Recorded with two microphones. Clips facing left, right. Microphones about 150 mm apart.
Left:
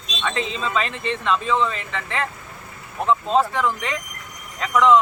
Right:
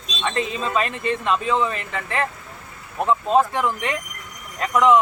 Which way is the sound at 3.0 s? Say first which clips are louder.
Right 1 dB; 10° right (ahead or behind).